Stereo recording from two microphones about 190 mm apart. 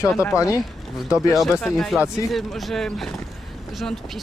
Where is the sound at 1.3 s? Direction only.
Centre (ahead or behind).